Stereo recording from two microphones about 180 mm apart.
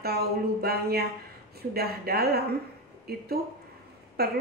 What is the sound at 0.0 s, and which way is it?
A woman's voice, 60° right (ahead or behind).